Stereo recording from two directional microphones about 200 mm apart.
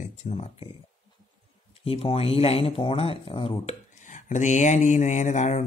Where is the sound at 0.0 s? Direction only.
35° left (ahead or behind).